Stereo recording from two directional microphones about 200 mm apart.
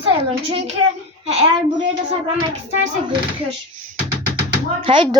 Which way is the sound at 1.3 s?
30° right (ahead or behind).